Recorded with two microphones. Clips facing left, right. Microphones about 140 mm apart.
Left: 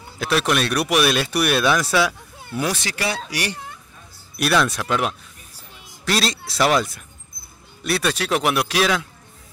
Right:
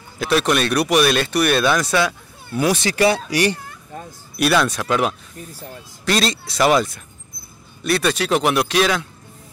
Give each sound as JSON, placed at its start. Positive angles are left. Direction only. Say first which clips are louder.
{"t": 0.2, "sound": "speech", "louder": "right 2 dB", "side_deg": 0}
{"t": 2.7, "sound": "speech", "louder": "right 9 dB", "side_deg": -25}
{"t": 3.9, "sound": "a sound", "louder": "right 14 dB", "side_deg": -90}
{"t": 4.4, "sound": "speech", "louder": "right 2 dB", "side_deg": 0}